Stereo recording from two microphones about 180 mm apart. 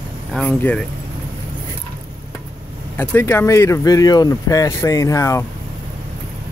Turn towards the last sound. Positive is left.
turn(degrees=15)  # may be behind; listen again after turning